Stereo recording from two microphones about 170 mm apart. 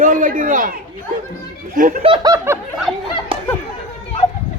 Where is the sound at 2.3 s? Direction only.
15° right (ahead or behind).